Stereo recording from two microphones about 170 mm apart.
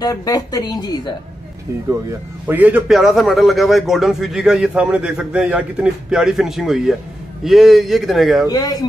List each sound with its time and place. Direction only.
0.0 s speech: 20° left (ahead or behind)
2.4 s a man's voice: 10° right (ahead or behind)
8.5 s speech: 20° left (ahead or behind)